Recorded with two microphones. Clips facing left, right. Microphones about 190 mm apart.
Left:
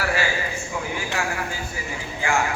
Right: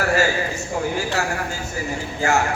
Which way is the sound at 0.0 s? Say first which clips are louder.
Right 5 dB; 45° right (ahead or behind).